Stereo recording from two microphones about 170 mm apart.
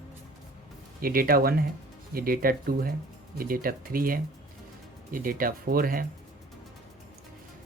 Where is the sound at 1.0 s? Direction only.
60° right (ahead or behind).